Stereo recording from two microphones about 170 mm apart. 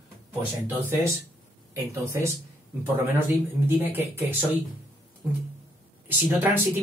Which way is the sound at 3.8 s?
10° right (ahead or behind).